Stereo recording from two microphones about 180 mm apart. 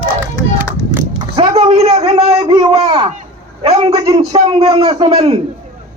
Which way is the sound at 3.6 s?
35° right (ahead or behind).